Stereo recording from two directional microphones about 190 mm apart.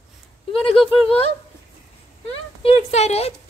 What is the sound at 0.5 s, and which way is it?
Speech, 30° left (ahead or behind).